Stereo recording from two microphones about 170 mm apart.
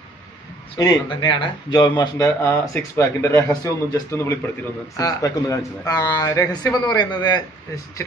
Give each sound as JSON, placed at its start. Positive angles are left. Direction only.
{"t": 0.7, "sound": "speech", "side_deg": 25}